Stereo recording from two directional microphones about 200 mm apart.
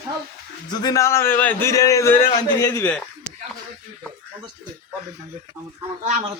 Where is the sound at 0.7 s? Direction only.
20° left (ahead or behind).